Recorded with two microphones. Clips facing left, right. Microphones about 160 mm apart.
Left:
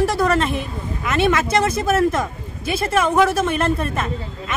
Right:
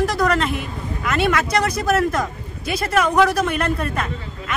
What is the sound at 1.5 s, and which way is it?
Speech, 25° left (ahead or behind).